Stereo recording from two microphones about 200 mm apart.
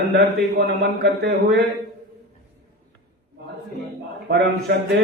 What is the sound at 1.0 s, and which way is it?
Speech, 55° right (ahead or behind).